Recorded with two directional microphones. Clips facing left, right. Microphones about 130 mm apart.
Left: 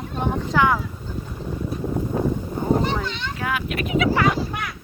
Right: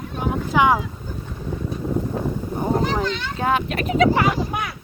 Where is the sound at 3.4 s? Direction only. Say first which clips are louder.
Right 4 dB; 30° right (ahead or behind).